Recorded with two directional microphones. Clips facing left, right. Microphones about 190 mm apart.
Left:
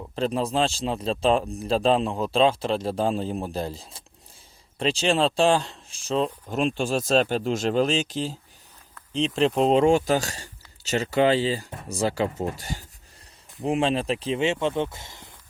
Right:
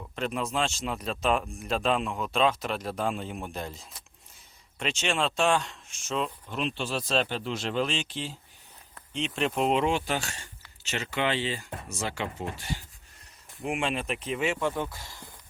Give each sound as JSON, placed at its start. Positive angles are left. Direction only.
{"t": 0.2, "sound": "speech", "side_deg": 35}